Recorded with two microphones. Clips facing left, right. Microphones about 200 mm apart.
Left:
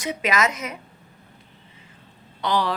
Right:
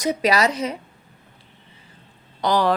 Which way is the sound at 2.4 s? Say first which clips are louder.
Right 4 dB; 45° right (ahead or behind).